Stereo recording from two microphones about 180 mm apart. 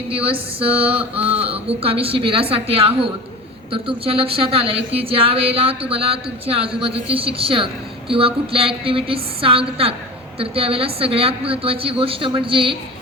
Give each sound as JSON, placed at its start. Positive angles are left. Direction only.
{"t": 0.7, "sound": "mantra", "side_deg": -10}
{"t": 1.2, "sound": "speech", "side_deg": -35}